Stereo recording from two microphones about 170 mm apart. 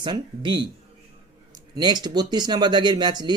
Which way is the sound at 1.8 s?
25° right (ahead or behind).